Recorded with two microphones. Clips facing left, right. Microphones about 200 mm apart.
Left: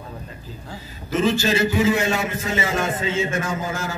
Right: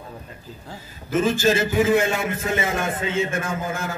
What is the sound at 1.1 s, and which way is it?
A man's voice, 50° right (ahead or behind).